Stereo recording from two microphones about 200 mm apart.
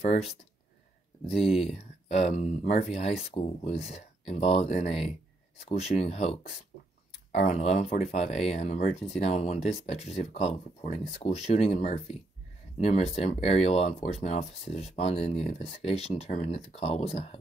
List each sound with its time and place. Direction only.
1.6 s speech: 30° left (ahead or behind)
7.3 s speech: 35° left (ahead or behind)